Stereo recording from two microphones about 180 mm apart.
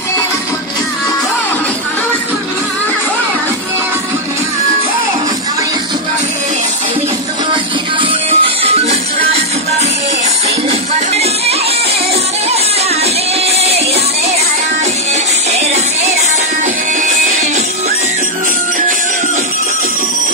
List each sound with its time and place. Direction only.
8.0 s music: 35° right (ahead or behind)
15.5 s music: 35° right (ahead or behind)